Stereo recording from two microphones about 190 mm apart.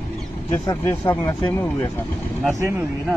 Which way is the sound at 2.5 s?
15° right (ahead or behind).